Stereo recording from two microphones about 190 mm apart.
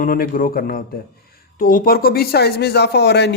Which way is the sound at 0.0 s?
45° left (ahead or behind).